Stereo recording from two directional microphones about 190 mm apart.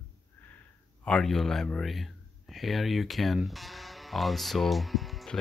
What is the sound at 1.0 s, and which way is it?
A man's voice, 5° left (ahead or behind).